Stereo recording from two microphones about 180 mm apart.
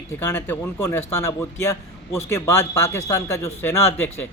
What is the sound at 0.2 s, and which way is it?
A man's voice, 15° left (ahead or behind).